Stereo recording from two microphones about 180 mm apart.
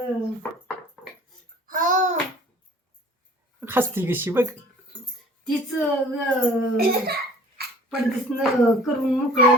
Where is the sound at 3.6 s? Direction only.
10° right (ahead or behind).